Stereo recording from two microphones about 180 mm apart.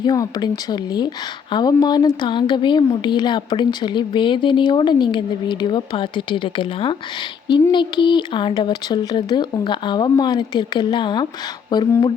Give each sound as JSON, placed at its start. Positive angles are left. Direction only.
{"t": 0.0, "sound": "a woman's voice", "side_deg": 25}